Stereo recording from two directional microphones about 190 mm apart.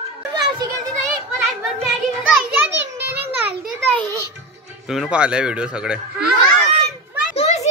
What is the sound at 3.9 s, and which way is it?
Speech, 15° left (ahead or behind).